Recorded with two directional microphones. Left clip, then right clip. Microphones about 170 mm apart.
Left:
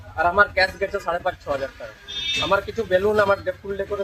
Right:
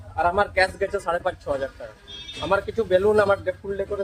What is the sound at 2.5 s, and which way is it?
Speech, centre (ahead or behind).